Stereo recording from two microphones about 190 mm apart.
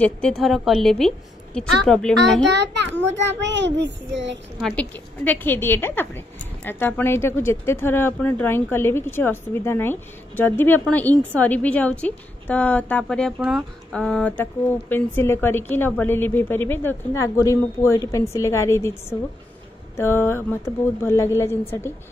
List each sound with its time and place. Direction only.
0.0 s a woman's voice: 5° left (ahead or behind)
2.5 s a child's voice: 65° right (ahead or behind)
4.6 s a woman's voice: 5° left (ahead or behind)